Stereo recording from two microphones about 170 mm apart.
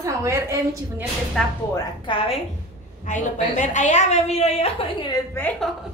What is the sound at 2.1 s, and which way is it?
Speech, 30° left (ahead or behind).